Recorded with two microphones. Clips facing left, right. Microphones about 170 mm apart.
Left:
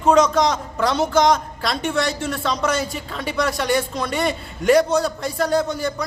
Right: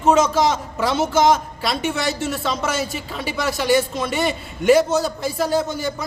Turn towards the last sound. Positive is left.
turn(degrees=0)  # may be behind; listen again after turning